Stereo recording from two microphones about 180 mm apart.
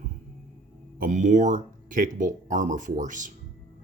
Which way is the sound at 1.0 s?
45° right (ahead or behind).